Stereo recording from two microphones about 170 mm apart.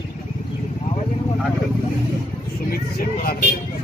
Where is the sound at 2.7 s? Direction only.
60° left (ahead or behind).